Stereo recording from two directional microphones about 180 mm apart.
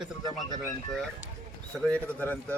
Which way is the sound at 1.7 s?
10° left (ahead or behind).